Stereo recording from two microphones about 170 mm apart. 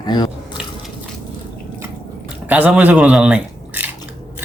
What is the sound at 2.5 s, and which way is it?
Speech, 10° right (ahead or behind).